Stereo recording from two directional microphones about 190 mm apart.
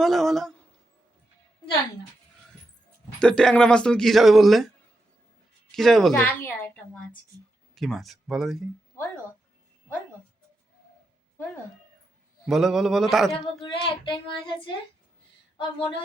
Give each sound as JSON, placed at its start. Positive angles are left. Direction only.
{"t": 0.0, "sound": "speech", "side_deg": 0}
{"t": 3.2, "sound": "speech", "side_deg": 5}
{"t": 5.7, "sound": "speech", "side_deg": 0}
{"t": 7.8, "sound": "speech", "side_deg": 0}
{"t": 12.5, "sound": "speech", "side_deg": 0}
{"t": 13.3, "sound": "child singing", "side_deg": 25}